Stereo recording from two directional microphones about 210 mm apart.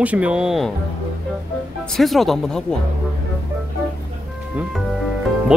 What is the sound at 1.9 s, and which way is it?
Speech, centre (ahead or behind).